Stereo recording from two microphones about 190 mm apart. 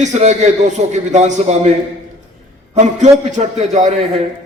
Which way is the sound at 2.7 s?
40° right (ahead or behind).